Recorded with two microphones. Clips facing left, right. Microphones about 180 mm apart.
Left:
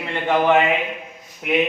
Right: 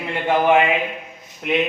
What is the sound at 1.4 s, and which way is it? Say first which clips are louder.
Speech: left 1 dB; 5° left (ahead or behind).